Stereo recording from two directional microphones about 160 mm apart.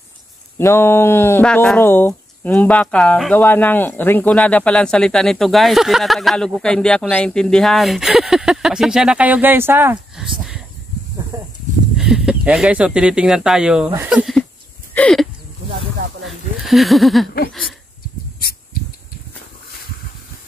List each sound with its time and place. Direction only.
0.6 s speech: 15° left (ahead or behind); by 9.9 s 15° right (ahead or behind)
10.2 s a sound: 5° right (ahead or behind)
11.3 s speech: 20° right (ahead or behind)
12.0 s speech: 5° right (ahead or behind)
15.0 s a sound: 5° left (ahead or behind)
16.6 s speech: centre (ahead or behind)